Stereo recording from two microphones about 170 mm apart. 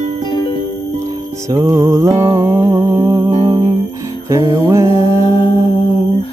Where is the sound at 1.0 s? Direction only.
20° right (ahead or behind).